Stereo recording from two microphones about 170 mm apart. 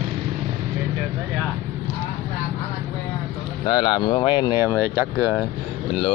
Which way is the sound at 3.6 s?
30° left (ahead or behind).